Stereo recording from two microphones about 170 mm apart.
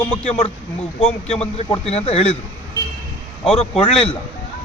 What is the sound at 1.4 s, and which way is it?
Speech, 40° left (ahead or behind).